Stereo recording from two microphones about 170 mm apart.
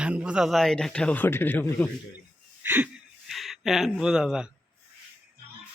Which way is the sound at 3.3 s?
Centre (ahead or behind).